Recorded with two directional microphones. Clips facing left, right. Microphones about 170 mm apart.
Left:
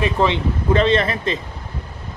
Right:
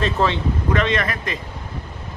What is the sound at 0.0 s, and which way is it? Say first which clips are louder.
Speech: left 2 dB; 15° left (ahead or behind).